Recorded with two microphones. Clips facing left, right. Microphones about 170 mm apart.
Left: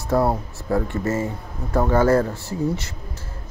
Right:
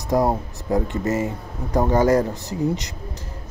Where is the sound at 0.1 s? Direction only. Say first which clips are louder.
Even; 15° right (ahead or behind).